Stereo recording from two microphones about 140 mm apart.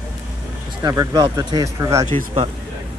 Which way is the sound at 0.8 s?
25° right (ahead or behind).